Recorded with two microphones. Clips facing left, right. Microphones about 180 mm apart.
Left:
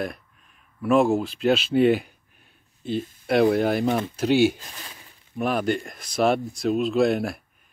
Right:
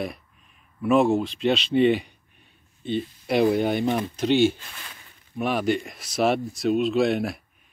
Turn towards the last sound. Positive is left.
turn(degrees=0)  # may be behind; listen again after turning